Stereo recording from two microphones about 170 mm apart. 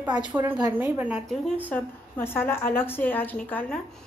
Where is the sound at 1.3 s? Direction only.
5° left (ahead or behind).